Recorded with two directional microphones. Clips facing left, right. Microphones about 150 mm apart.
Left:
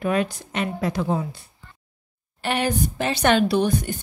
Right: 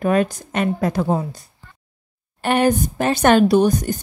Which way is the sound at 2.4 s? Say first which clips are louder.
Right 6 dB; 50° right (ahead or behind).